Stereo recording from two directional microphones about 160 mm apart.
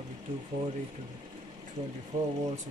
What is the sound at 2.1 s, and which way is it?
Speech, 55° right (ahead or behind).